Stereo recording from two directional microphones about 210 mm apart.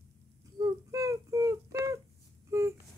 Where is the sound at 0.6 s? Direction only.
15° right (ahead or behind).